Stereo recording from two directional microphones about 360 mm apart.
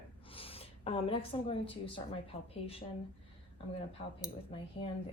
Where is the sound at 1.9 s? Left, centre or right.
Centre.